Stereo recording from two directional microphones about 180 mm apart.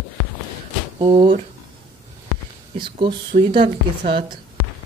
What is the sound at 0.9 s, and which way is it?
Speech, 30° right (ahead or behind).